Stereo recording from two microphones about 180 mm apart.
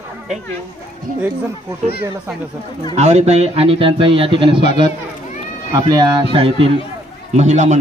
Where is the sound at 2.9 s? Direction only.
35° right (ahead or behind).